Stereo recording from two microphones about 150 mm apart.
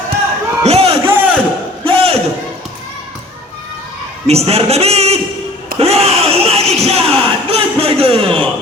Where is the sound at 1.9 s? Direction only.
40° right (ahead or behind).